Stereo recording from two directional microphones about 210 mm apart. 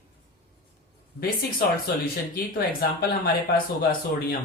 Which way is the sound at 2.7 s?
45° left (ahead or behind).